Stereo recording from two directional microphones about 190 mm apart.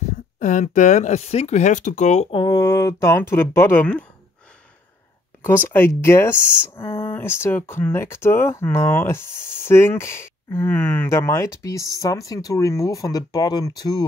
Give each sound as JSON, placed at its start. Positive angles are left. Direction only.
{"t": 0.4, "sound": "speech", "side_deg": 40}
{"t": 2.3, "sound": "speech", "side_deg": 20}
{"t": 5.7, "sound": "speech", "side_deg": 10}